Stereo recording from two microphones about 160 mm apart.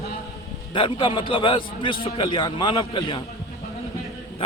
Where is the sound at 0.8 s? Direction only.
30° left (ahead or behind).